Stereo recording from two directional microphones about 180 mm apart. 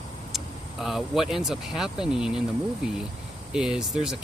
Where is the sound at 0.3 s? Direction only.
Centre (ahead or behind).